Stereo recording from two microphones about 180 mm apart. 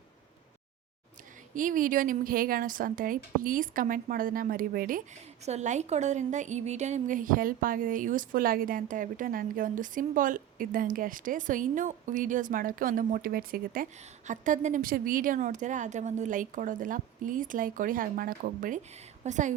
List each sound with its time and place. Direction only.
1.5 s a woman's voice: 45° right (ahead or behind)
5.5 s a woman's voice: 40° right (ahead or behind)